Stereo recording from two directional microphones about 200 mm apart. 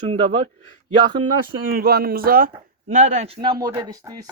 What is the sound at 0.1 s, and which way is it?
Speech, 30° right (ahead or behind).